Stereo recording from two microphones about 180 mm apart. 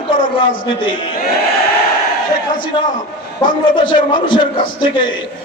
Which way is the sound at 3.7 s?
25° left (ahead or behind).